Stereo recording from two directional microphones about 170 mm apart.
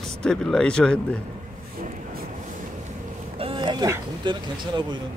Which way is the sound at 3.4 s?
30° right (ahead or behind).